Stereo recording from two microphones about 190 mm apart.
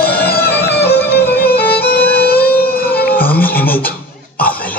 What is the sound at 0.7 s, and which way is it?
Music, 60° left (ahead or behind).